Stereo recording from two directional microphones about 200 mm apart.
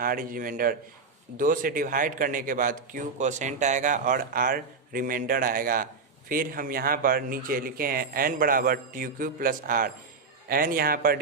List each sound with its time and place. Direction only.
0.0 s a man's voice: 45° right (ahead or behind)